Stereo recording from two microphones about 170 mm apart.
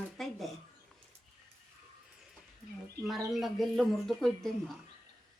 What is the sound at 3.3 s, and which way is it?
Speech, centre (ahead or behind).